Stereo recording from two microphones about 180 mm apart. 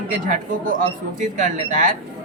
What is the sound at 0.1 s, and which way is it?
Speech, 50° right (ahead or behind).